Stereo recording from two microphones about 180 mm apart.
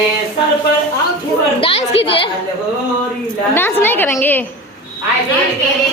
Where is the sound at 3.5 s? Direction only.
10° left (ahead or behind).